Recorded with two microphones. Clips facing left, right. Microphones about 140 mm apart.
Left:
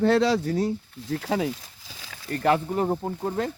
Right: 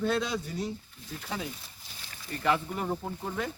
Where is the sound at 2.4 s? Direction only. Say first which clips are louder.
Left 6 dB; 40° left (ahead or behind).